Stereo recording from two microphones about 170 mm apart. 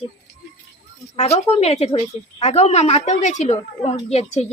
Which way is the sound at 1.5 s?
40° left (ahead or behind).